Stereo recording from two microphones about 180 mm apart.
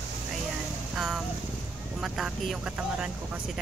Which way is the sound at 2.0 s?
5° right (ahead or behind).